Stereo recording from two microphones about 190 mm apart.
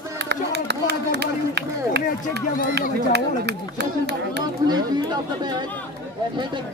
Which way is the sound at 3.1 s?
60° right (ahead or behind).